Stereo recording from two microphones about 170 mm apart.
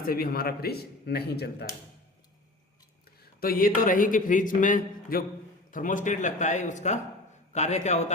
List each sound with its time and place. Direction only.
0.0 s a man's voice: 60° left (ahead or behind)
3.4 s a man's voice: 60° left (ahead or behind); by 8.1 s 40° left (ahead or behind)